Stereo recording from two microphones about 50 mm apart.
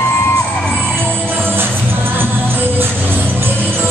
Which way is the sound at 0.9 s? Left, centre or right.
Right.